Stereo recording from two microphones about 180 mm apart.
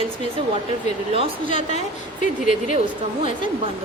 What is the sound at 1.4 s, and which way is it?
Speech, 45° left (ahead or behind).